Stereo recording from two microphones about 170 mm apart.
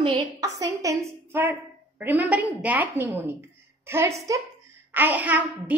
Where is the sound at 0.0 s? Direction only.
25° right (ahead or behind).